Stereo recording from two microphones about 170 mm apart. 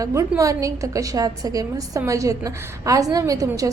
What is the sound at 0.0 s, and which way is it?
A woman's voice, 20° right (ahead or behind).